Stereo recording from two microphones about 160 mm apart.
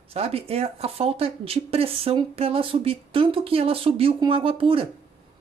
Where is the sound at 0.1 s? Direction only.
40° right (ahead or behind).